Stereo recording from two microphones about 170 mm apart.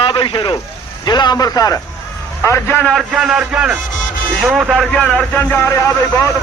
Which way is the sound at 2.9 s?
5° right (ahead or behind).